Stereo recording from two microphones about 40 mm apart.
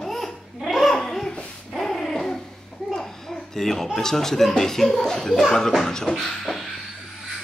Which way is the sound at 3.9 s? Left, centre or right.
Centre.